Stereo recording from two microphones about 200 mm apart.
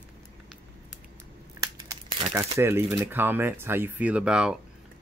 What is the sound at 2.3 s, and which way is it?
Speech, 10° right (ahead or behind).